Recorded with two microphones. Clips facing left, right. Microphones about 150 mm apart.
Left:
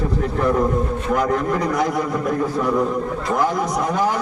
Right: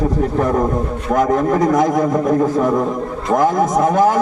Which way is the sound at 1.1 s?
45° right (ahead or behind).